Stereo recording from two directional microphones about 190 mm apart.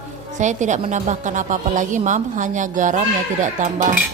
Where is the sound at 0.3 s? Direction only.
40° right (ahead or behind).